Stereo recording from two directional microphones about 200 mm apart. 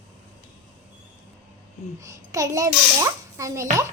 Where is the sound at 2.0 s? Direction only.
15° right (ahead or behind).